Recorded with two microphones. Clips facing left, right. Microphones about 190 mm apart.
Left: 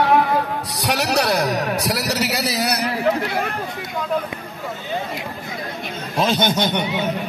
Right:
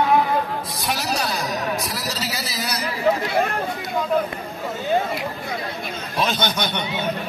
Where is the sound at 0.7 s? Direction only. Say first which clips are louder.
Left 7 dB; 70° left (ahead or behind).